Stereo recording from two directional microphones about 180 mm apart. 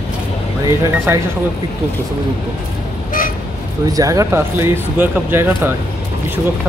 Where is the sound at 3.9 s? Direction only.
20° right (ahead or behind).